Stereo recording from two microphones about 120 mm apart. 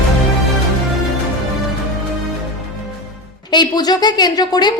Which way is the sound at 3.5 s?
35° left (ahead or behind).